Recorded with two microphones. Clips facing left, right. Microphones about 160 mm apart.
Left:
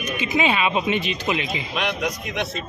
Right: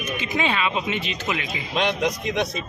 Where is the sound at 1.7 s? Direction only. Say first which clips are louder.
Right 4 dB; 30° right (ahead or behind).